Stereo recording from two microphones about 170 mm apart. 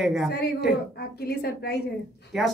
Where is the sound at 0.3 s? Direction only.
70° left (ahead or behind).